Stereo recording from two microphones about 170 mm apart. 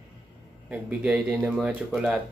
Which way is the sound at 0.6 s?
5° right (ahead or behind).